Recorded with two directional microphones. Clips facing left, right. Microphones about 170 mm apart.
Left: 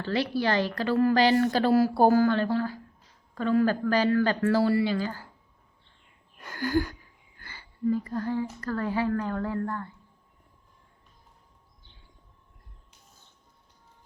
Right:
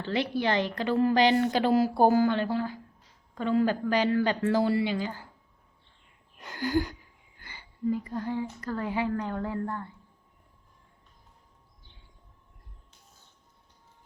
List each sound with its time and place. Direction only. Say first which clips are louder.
0.0 s a woman's voice: left 1 dB; 20° right (ahead or behind)
6.4 s a sound: left 1 dB; 20° right (ahead or behind)
7.3 s speech: left 2 dB; 15° right (ahead or behind)